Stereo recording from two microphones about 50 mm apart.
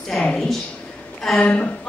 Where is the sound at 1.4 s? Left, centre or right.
Left.